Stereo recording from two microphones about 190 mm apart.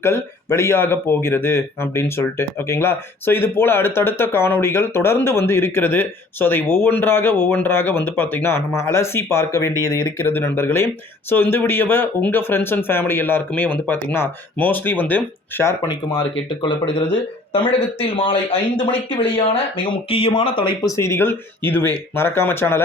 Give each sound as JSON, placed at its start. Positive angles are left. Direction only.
{"t": 0.0, "sound": "speech", "side_deg": 15}
{"t": 19.4, "sound": "speech", "side_deg": 30}